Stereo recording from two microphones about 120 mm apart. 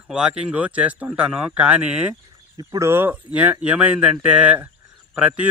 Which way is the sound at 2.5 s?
35° right (ahead or behind).